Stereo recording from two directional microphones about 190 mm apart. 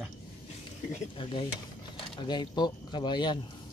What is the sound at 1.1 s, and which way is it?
Stir, 25° left (ahead or behind).